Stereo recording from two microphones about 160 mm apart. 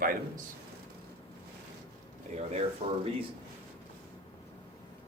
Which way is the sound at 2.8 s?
45° right (ahead or behind).